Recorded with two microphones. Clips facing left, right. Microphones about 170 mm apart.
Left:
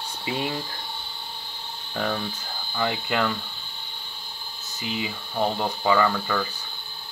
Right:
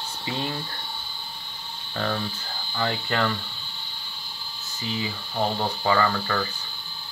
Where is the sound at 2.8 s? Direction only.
10° left (ahead or behind).